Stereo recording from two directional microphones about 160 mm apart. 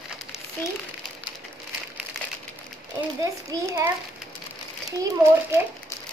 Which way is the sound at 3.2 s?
20° right (ahead or behind).